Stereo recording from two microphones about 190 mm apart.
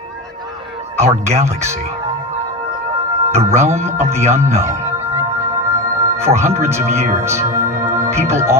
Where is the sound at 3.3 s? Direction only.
15° right (ahead or behind).